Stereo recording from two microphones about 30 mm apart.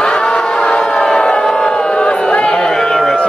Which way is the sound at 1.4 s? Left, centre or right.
Centre.